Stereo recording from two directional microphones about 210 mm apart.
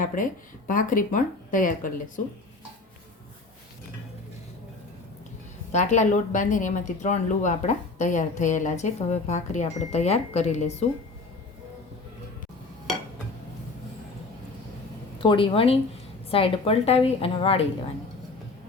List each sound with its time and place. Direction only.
0.0 s speech: 40° left (ahead or behind)
5.7 s speech: 35° left (ahead or behind)
15.2 s a woman's voice: 25° left (ahead or behind)